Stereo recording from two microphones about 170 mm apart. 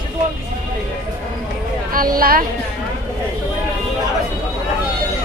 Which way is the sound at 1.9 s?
55° right (ahead or behind).